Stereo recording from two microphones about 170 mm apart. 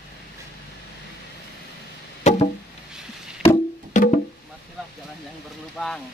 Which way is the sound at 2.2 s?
40° left (ahead or behind).